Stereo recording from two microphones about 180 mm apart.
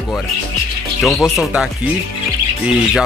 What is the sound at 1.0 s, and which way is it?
Speech, centre (ahead or behind).